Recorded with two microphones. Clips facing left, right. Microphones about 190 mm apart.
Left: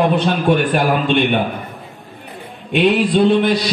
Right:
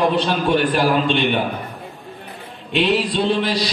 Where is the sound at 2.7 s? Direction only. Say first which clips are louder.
Left 4 dB; 55° left (ahead or behind).